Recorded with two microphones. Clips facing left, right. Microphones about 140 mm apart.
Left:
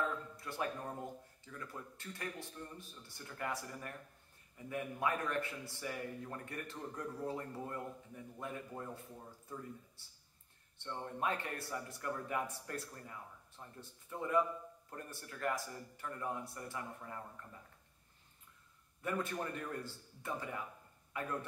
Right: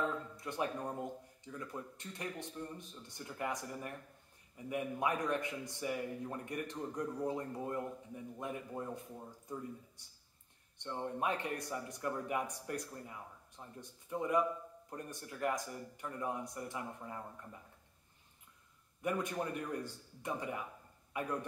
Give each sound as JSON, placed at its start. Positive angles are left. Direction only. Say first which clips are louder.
{"t": 0.0, "sound": "a man's voice", "louder": "right 2 dB", "side_deg": -20}
{"t": 18.9, "sound": "a man's voice", "louder": "right 2 dB", "side_deg": -15}